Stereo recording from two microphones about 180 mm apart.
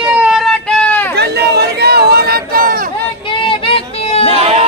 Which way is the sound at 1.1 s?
65° right (ahead or behind).